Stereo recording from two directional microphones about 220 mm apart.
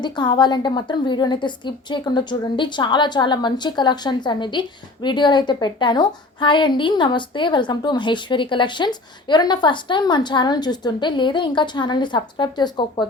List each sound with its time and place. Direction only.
0.0 s a woman's voice: 20° left (ahead or behind)